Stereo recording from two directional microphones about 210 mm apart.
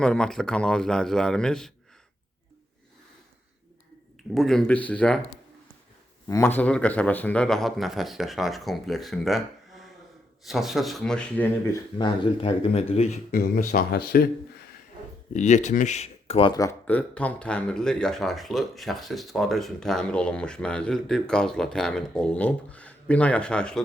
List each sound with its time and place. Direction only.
0.0 s speech: 5° left (ahead or behind)
4.2 s speech: centre (ahead or behind)
6.2 s speech: 15° left (ahead or behind)
11.9 s speech: 20° left (ahead or behind); by 14.3 s 45° left (ahead or behind)
15.3 s speech: 35° left (ahead or behind); by 23.8 s 5° left (ahead or behind)